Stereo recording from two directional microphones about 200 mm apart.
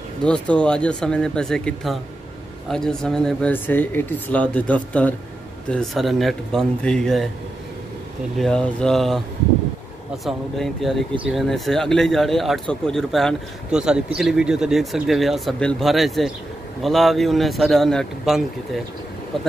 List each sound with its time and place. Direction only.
0.2 s speech: 5° left (ahead or behind)
8.4 s speech: 5° left (ahead or behind)
10.2 s speech: centre (ahead or behind)